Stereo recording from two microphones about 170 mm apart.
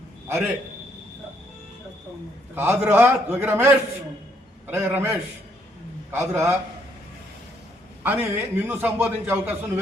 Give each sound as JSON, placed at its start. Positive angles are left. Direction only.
{"t": 0.3, "sound": "a man's voice", "side_deg": -15}
{"t": 2.6, "sound": "a man's voice", "side_deg": -15}
{"t": 8.0, "sound": "a man's voice", "side_deg": -15}